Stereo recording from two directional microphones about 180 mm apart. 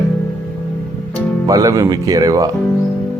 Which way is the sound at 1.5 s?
20° right (ahead or behind).